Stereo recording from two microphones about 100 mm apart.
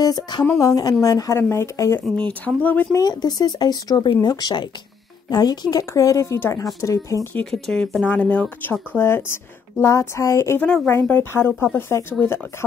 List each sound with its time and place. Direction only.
0.0 s speech: 45° left (ahead or behind); by 2.0 s 25° left (ahead or behind)
2.1 s speech: 15° left (ahead or behind)
2.9 s speech: 40° left (ahead or behind)
7.5 s speech: 5° left (ahead or behind)
8.9 s speech: 25° left (ahead or behind)